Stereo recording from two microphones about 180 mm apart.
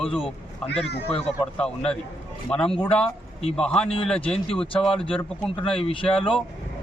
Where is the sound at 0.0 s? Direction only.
5° left (ahead or behind).